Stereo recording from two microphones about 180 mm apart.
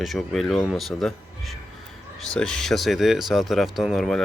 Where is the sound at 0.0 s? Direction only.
Centre (ahead or behind).